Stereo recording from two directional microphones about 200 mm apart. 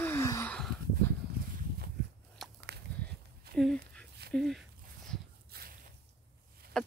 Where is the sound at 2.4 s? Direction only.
Centre (ahead or behind).